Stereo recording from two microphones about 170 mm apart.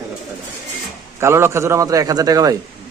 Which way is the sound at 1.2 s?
15° right (ahead or behind).